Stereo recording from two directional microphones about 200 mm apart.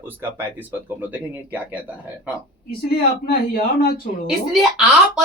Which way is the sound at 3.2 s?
50° left (ahead or behind).